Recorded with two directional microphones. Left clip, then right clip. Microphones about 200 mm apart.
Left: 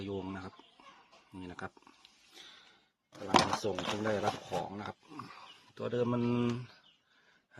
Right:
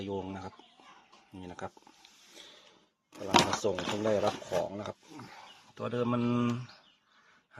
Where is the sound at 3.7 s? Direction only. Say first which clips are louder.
Right 2 dB; 15° left (ahead or behind).